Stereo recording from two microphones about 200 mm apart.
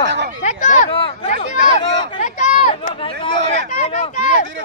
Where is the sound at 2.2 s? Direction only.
35° left (ahead or behind).